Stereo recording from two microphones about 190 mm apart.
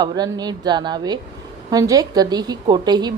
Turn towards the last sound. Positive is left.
turn(degrees=-20)  # may be behind; listen again after turning